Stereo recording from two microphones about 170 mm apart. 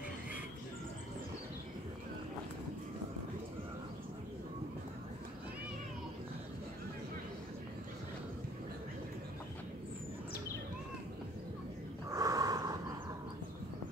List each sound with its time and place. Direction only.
12.1 s snort: 20° right (ahead or behind)